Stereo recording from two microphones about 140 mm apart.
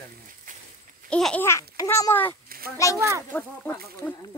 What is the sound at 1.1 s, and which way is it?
Speech, 5° left (ahead or behind).